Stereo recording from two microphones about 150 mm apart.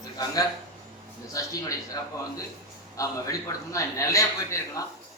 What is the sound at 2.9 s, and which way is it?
A man's voice, 20° left (ahead or behind).